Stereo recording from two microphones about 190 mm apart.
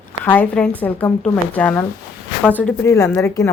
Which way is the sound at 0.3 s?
5° left (ahead or behind).